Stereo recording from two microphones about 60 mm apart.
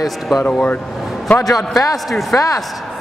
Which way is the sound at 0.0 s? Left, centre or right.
Centre.